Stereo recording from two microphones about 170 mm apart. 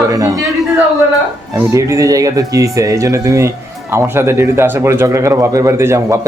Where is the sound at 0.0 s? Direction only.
20° right (ahead or behind).